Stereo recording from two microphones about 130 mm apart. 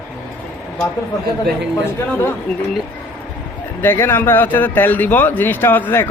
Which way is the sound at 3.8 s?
15° left (ahead or behind).